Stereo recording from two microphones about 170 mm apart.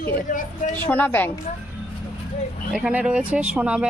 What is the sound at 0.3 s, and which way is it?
Speech, 50° left (ahead or behind).